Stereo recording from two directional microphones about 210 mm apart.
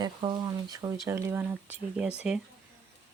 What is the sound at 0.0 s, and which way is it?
Speech, 20° right (ahead or behind).